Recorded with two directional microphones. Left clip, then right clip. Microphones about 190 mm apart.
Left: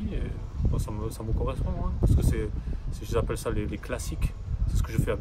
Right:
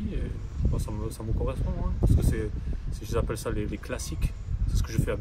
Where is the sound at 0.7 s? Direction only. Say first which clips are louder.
Left 1 dB; 10° left (ahead or behind).